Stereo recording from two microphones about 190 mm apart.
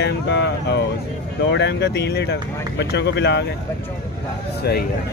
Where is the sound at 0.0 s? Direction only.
65° left (ahead or behind).